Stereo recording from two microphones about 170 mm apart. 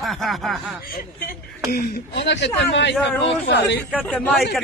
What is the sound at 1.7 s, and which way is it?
Speech, 80° left.